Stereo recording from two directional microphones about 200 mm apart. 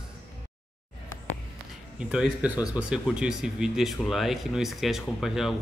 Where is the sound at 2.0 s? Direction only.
5° right (ahead or behind).